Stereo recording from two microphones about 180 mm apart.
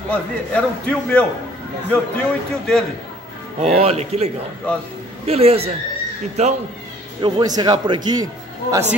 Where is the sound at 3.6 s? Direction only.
35° right (ahead or behind).